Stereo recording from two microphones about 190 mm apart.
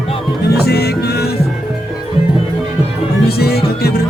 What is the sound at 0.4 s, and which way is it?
Music, 55° left (ahead or behind).